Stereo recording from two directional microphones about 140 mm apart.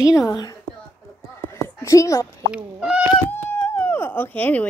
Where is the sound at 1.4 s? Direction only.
20° left (ahead or behind).